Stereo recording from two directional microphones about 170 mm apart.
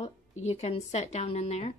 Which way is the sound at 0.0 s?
40° left (ahead or behind).